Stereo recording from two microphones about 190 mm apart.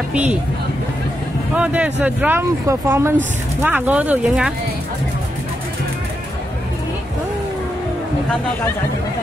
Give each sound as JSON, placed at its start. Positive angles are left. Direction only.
{"t": 0.1, "sound": "speech", "side_deg": -5}
{"t": 1.5, "sound": "speech", "side_deg": -5}